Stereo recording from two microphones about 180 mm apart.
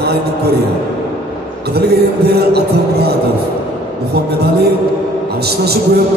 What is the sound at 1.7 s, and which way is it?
Speech, 60° right (ahead or behind).